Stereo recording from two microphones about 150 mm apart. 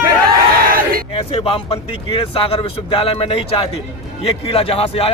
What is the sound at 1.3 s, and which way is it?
A man's voice, 40° left (ahead or behind).